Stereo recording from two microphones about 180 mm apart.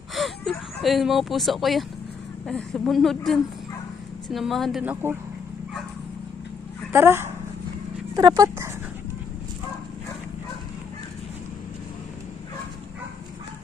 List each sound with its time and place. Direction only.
0.1 s a sound: centre (ahead or behind)
2.5 s a woman's voice: 5° left (ahead or behind)
6.9 s speech: 15° right (ahead or behind)